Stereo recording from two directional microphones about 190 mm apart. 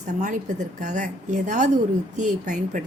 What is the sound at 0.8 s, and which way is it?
A woman's voice, 40° right (ahead or behind).